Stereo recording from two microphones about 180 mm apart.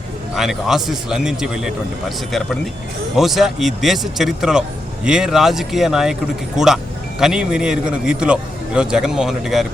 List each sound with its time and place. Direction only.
0.3 s a man's voice: centre (ahead or behind)
7.2 s a man's voice: 5° right (ahead or behind)